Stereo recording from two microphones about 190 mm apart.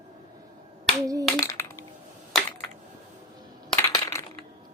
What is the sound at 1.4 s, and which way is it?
Coin, 15° left (ahead or behind).